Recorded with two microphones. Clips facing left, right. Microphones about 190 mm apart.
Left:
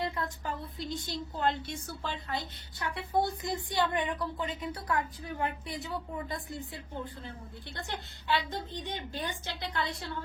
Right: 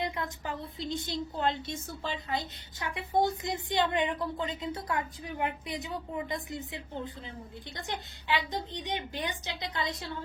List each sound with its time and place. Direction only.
0.0 s a woman's voice: 20° right (ahead or behind)
7.8 s a woman's voice: 15° right (ahead or behind)